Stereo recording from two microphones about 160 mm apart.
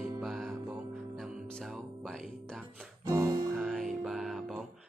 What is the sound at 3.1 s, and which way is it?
Music, 20° right (ahead or behind).